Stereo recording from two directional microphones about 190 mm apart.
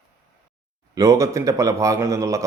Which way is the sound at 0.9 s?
15° right (ahead or behind).